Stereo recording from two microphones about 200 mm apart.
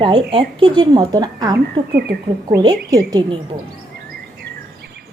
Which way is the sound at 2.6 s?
20° right (ahead or behind).